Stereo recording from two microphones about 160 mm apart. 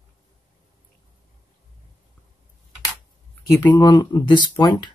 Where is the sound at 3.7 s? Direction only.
25° left (ahead or behind).